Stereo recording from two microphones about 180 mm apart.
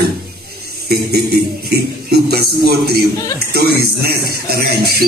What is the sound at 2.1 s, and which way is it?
Music, 60° right (ahead or behind).